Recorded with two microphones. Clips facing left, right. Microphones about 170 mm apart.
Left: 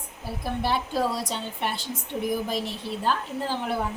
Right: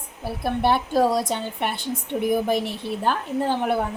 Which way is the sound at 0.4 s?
55° right (ahead or behind).